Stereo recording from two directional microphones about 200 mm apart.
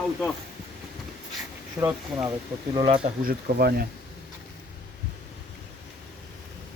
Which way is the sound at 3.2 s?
50° right (ahead or behind).